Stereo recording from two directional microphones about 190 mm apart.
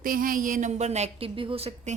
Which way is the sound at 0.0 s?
45° right (ahead or behind).